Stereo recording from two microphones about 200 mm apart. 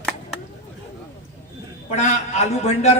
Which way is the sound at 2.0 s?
35° left (ahead or behind).